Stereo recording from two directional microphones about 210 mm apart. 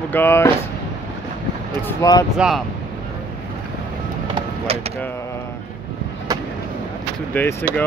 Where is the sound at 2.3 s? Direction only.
5° right (ahead or behind).